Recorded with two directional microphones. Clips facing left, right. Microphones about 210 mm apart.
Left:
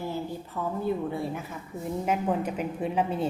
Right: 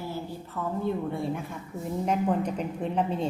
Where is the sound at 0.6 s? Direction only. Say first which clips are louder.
Even; 10° left (ahead or behind).